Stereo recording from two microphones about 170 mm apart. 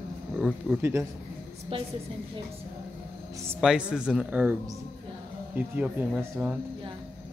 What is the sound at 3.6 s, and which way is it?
Speech, 5° right (ahead or behind).